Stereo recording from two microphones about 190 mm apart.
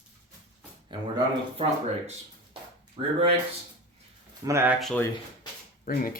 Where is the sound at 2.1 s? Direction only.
25° right (ahead or behind).